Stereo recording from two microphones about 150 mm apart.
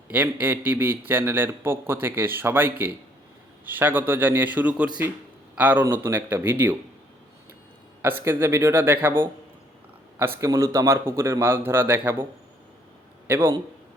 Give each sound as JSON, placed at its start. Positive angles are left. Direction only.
{"t": 0.1, "sound": "a man's voice", "side_deg": -10}
{"t": 8.0, "sound": "a man's voice", "side_deg": -15}